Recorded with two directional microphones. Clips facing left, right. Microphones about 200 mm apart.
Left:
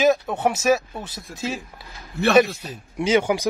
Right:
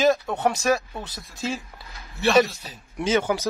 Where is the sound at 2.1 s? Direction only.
55° left (ahead or behind).